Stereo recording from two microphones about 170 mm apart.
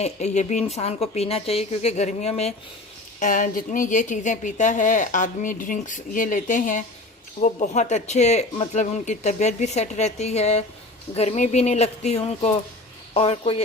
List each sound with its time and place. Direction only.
0.0 s speech: 45° left (ahead or behind)
3.2 s a woman's voice: 50° left (ahead or behind)